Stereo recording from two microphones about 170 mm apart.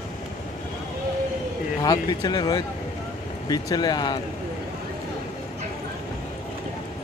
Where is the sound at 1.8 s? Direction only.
25° left (ahead or behind).